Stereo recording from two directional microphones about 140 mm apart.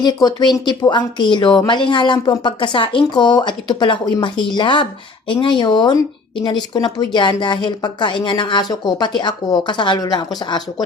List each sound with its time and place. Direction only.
0.0 s speech: 30° left (ahead or behind)